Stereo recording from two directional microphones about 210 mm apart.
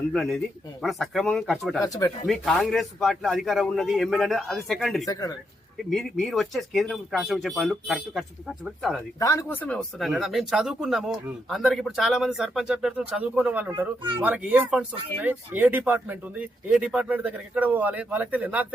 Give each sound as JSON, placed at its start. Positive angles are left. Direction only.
{"t": 0.1, "sound": "speech", "side_deg": 0}
{"t": 1.8, "sound": "speech", "side_deg": 15}
{"t": 2.2, "sound": "speech", "side_deg": 0}
{"t": 9.1, "sound": "speech", "side_deg": 15}